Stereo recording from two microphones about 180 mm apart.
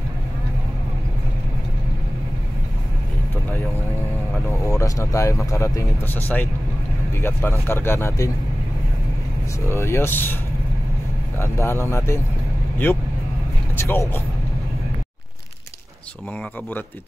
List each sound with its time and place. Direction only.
4.5 s speech: 15° left (ahead or behind)
9.7 s speech: 15° left (ahead or behind)
11.3 s speech: 15° left (ahead or behind)